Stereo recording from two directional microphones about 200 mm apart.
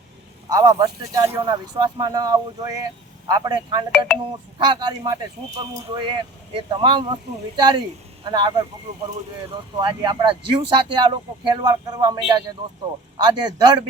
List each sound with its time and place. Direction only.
0.5 s speech: 20° right (ahead or behind)
9.7 s speech: 25° right (ahead or behind)